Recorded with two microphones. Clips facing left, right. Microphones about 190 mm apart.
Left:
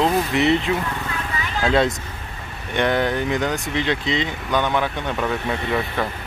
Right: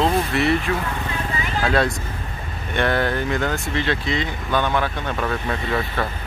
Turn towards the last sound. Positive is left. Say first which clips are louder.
# left 1 dB
turn(degrees=10)  # may be behind; listen again after turning